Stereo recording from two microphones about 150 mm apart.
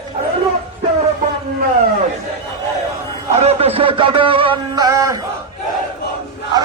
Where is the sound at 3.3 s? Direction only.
45° right (ahead or behind); by 5.2 s 20° right (ahead or behind).